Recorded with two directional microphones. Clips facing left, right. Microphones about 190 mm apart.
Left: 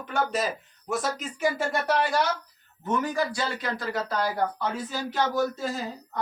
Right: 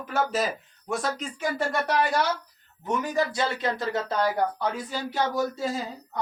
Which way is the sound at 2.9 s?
20° right (ahead or behind).